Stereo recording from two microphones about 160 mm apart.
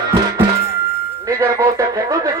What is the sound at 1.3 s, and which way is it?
Radio, 20° right (ahead or behind).